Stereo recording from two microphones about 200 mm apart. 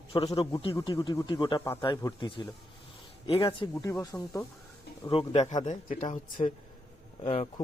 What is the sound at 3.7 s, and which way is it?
Speech, 15° left (ahead or behind).